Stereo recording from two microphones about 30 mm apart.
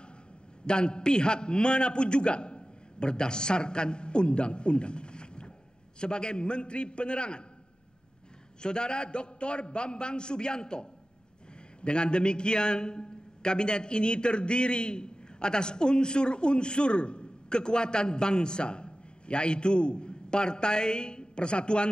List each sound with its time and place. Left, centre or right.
0.7 s a man's voice: left
8.6 s a man's voice: left